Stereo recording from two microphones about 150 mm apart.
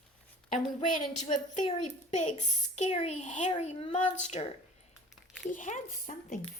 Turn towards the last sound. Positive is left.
turn(degrees=55)  # may be behind; listen again after turning